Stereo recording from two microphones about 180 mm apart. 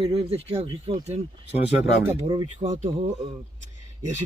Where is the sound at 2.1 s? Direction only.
20° right (ahead or behind).